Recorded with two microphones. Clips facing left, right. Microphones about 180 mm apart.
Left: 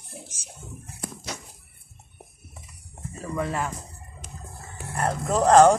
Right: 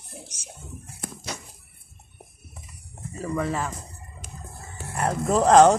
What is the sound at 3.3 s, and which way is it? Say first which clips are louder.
Speech: even; centre (ahead or behind).